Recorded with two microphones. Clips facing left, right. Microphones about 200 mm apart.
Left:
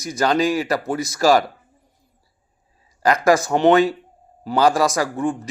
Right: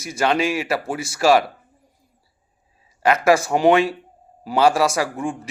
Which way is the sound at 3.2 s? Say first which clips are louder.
Left 1 dB; 10° right (ahead or behind).